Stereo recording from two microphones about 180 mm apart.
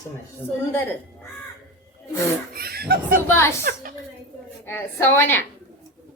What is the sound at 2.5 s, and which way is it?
Speech, 60° right (ahead or behind).